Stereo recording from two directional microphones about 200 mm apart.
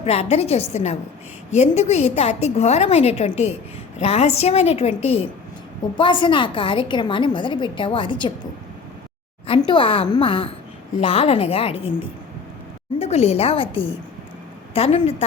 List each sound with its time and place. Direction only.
0.0 s a woman's voice: 30° left (ahead or behind)
9.6 s a woman's voice: 25° left (ahead or behind)
13.0 s a woman's voice: 30° left (ahead or behind)